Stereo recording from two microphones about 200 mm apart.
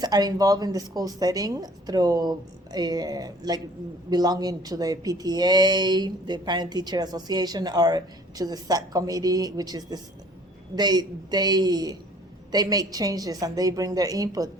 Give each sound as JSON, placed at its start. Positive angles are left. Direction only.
{"t": 0.0, "sound": "a woman's voice", "side_deg": -20}